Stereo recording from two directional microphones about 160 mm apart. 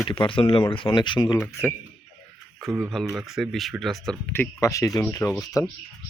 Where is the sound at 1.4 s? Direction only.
15° left (ahead or behind).